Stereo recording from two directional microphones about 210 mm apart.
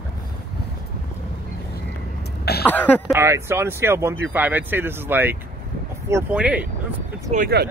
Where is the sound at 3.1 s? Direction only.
15° right (ahead or behind).